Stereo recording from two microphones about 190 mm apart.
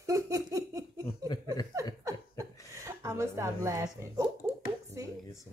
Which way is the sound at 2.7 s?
15° right (ahead or behind).